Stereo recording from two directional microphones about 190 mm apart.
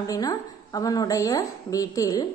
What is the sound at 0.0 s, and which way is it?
A woman's voice, 20° left (ahead or behind).